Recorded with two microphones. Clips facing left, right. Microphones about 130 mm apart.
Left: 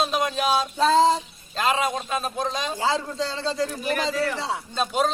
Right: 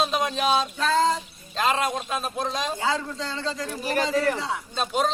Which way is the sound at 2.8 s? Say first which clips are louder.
Left 2 dB; 30° left (ahead or behind).